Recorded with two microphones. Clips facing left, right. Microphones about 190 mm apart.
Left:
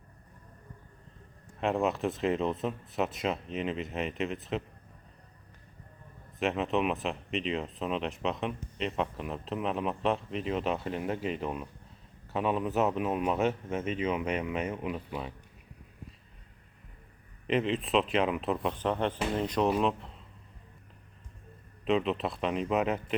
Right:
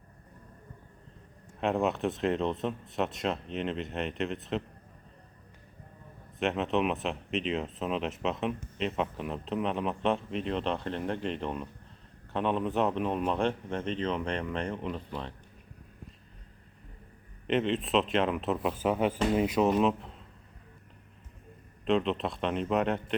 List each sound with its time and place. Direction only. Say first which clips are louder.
1.6 s speech: even; centre (ahead or behind)
6.4 s speech: even; centre (ahead or behind)
17.4 s speech: right 1 dB; centre (ahead or behind)
21.8 s speech: right 1 dB; centre (ahead or behind)